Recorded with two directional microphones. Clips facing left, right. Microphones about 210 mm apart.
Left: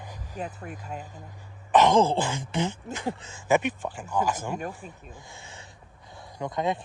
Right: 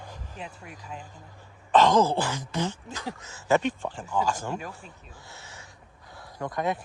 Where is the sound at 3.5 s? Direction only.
15° left (ahead or behind).